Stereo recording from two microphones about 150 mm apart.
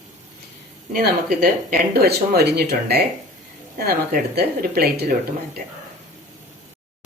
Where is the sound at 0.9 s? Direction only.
70° right (ahead or behind); by 5.1 s 90° right.